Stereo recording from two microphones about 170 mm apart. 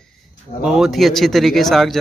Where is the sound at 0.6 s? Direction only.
5° right (ahead or behind).